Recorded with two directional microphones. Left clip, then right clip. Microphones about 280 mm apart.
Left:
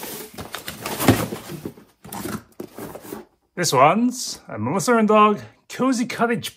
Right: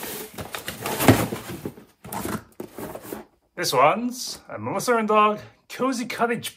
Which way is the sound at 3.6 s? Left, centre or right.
Left.